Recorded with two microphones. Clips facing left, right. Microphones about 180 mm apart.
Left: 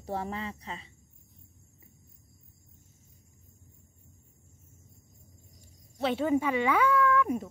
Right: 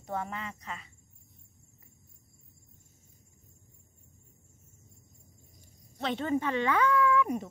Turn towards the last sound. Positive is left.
turn(degrees=0)  # may be behind; listen again after turning